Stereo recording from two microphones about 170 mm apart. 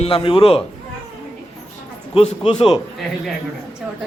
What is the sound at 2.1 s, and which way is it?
Speech, 35° left (ahead or behind).